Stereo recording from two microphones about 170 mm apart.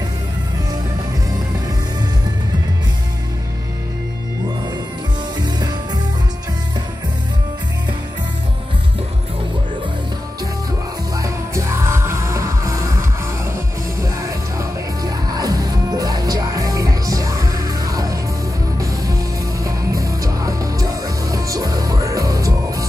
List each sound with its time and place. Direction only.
11.1 s music: 20° right (ahead or behind)
14.6 s music: 20° right (ahead or behind)
19.6 s music: 20° right (ahead or behind)